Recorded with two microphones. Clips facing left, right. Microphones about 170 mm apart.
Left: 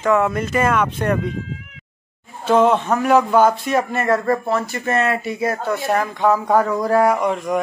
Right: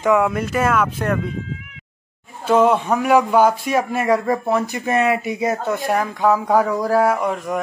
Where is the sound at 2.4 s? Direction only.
10° right (ahead or behind).